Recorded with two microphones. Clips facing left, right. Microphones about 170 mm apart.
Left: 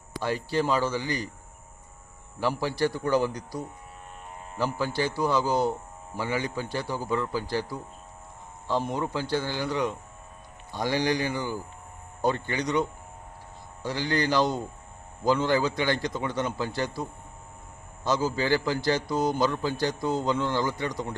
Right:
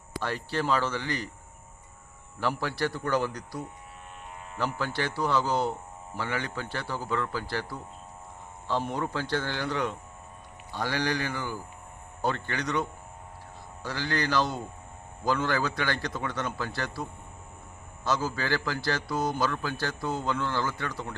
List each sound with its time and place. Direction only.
0.2 s a man's voice: 10° left (ahead or behind)
2.4 s a man's voice: 15° left (ahead or behind)
8.9 s a man's voice: 15° left (ahead or behind)
13.8 s a man's voice: 15° left (ahead or behind)